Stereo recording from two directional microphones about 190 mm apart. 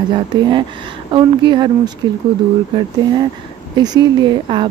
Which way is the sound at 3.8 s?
20° right (ahead or behind).